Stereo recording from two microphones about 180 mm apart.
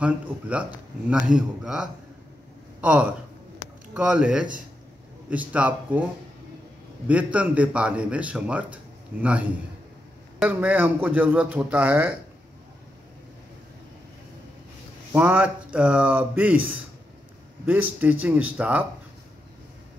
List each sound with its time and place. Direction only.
0.0 s a man's voice: 5° right (ahead or behind)
7.1 s a man's voice: 10° right (ahead or behind)
15.1 s a man's voice: 5° right (ahead or behind)